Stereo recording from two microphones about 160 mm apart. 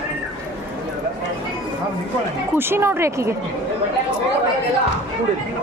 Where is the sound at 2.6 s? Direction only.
15° right (ahead or behind).